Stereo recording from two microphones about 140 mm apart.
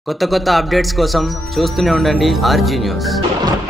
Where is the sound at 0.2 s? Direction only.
Centre (ahead or behind).